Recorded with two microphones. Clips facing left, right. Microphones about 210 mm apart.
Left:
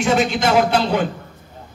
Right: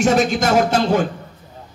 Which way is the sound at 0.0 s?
45° right (ahead or behind).